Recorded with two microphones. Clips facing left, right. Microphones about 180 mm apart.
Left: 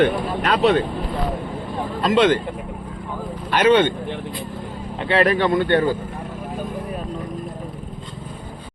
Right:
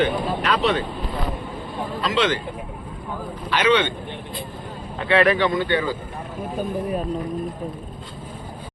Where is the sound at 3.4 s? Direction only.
50° left (ahead or behind).